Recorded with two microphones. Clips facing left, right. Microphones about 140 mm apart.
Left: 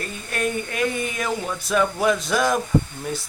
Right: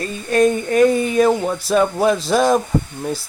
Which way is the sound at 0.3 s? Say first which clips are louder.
Right 11 dB; 35° right (ahead or behind).